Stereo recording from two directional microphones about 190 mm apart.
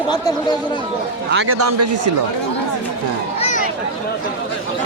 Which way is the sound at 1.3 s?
70° right (ahead or behind).